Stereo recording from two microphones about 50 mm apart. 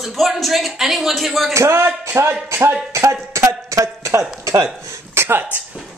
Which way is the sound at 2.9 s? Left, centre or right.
Right.